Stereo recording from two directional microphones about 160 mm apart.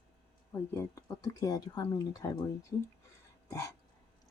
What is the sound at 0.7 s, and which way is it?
Speech, 15° left (ahead or behind).